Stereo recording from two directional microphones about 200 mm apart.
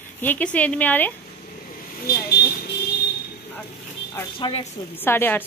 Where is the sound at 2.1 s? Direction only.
55° left (ahead or behind).